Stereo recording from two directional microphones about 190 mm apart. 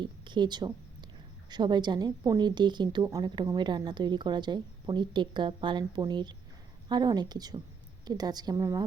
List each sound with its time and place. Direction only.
0.0 s a woman's voice: 25° right (ahead or behind)